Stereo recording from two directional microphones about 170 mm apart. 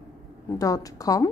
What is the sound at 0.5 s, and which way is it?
Speech, 20° left (ahead or behind).